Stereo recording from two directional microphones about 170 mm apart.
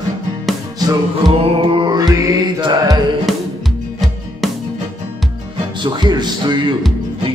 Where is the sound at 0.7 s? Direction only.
25° right (ahead or behind).